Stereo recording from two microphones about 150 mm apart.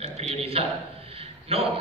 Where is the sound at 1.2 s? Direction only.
40° right (ahead or behind).